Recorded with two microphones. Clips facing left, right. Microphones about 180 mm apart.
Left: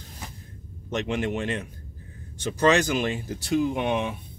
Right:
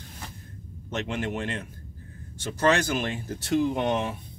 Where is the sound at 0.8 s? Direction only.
15° left (ahead or behind).